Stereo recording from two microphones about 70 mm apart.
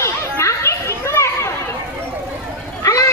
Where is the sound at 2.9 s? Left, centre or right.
Left.